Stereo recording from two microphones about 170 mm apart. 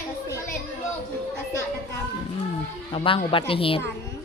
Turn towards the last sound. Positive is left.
turn(degrees=30)  # may be behind; listen again after turning